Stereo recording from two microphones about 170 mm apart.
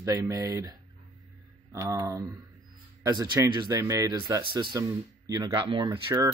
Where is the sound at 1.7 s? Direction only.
20° right (ahead or behind).